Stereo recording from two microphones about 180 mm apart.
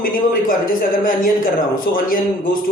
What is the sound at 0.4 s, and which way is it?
Speech, 50° left (ahead or behind).